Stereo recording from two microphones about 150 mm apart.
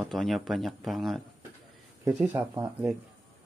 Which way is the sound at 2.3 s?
25° right (ahead or behind).